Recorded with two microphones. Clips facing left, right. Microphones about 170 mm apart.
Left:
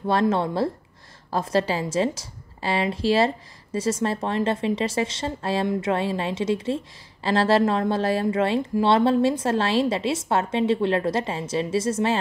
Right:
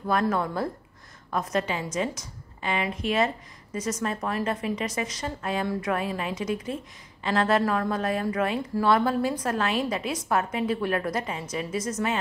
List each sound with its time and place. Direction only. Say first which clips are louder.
0.0 s a woman's voice: left 4 dB; 25° left (ahead or behind)